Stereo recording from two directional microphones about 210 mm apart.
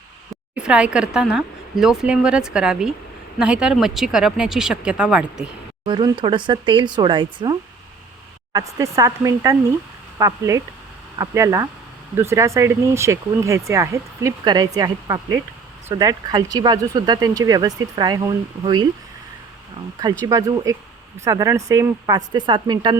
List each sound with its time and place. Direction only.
0.5 s speech: 5° right (ahead or behind)
5.8 s speech: 20° right (ahead or behind)
8.5 s speech: 15° right (ahead or behind)
20.2 s speech: 15° right (ahead or behind)